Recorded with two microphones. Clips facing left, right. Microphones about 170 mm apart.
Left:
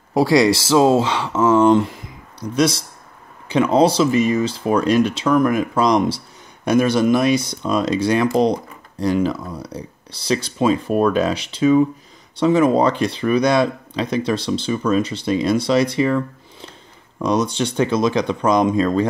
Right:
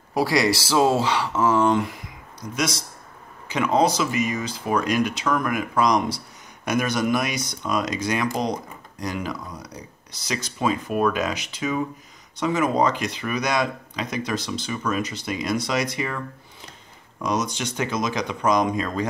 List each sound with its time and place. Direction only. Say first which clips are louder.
0.1 s speech: left 6 dB; 25° left (ahead or behind)
17.2 s speech: left 6 dB; 30° left (ahead or behind)